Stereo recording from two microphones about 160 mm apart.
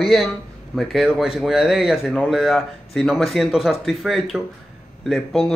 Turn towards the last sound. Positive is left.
turn(degrees=0)  # may be behind; listen again after turning